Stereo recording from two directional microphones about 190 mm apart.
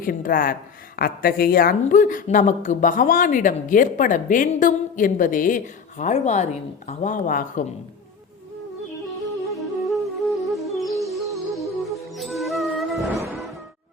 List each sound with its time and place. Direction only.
0.0 s speech: 50° left (ahead or behind)
9.5 s music: centre (ahead or behind)